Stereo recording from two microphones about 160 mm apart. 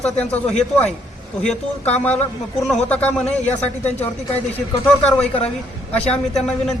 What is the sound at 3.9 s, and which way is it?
Speech, 40° left (ahead or behind).